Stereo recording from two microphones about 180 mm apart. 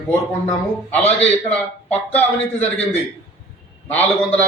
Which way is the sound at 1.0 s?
35° left (ahead or behind).